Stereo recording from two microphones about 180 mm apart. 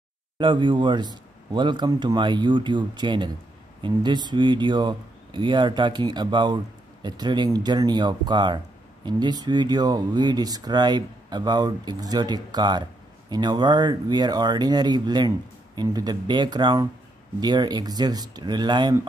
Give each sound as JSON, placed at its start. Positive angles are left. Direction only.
{"t": 0.4, "sound": "speech", "side_deg": -25}